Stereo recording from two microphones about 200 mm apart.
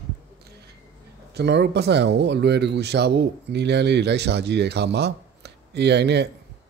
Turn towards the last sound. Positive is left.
turn(degrees=-55)  # may be behind; listen again after turning